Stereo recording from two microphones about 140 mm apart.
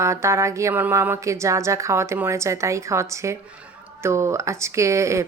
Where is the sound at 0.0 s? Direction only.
20° right (ahead or behind).